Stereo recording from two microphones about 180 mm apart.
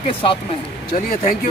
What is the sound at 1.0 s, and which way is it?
Speech, 45° left (ahead or behind).